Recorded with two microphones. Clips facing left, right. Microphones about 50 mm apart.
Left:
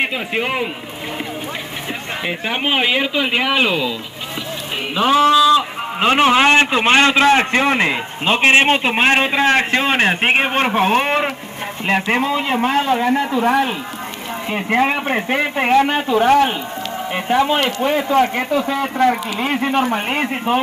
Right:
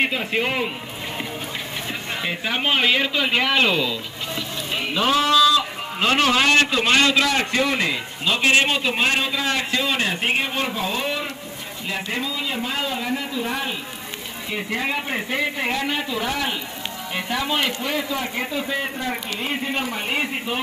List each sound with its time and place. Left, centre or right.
0.0 s speech: centre
2.2 s speech: centre
4.9 s a man's voice: centre; by 13.7 s left
14.5 s speech: left
17.1 s speech: left